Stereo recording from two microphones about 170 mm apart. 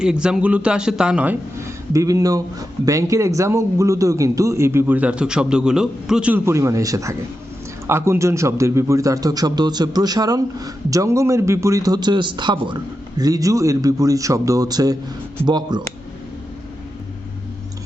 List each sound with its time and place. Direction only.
0.0 s a man's voice: 5° right (ahead or behind)
1.9 s a man's voice: 20° right (ahead or behind)